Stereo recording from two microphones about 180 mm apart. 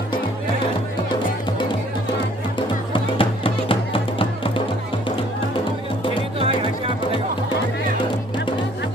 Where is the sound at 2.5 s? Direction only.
30° left (ahead or behind).